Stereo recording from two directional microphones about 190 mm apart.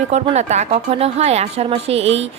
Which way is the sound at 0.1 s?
35° right (ahead or behind).